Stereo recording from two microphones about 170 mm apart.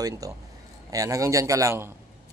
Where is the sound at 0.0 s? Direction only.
20° right (ahead or behind).